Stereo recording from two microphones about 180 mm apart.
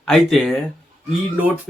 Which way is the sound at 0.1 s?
Centre (ahead or behind).